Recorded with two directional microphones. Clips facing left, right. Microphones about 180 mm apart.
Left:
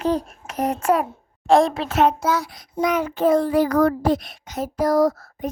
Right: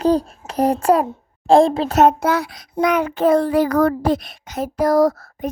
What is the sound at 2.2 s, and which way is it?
A child's voice, 60° right (ahead or behind).